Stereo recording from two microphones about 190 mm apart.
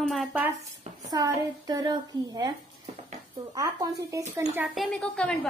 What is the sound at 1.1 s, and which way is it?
A woman's voice, 20° right (ahead or behind).